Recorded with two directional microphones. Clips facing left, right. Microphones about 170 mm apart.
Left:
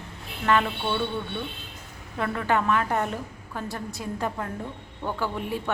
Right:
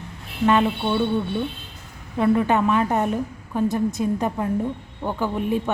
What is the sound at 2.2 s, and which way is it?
A woman's voice, 20° right (ahead or behind).